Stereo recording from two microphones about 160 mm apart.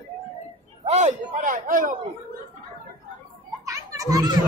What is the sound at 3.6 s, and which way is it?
Children playing, 20° right (ahead or behind).